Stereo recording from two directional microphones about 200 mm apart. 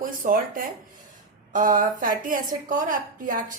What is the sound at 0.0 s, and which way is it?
A woman's voice, 45° right (ahead or behind).